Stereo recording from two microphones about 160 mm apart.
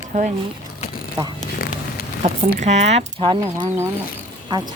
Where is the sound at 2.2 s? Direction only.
45° right (ahead or behind).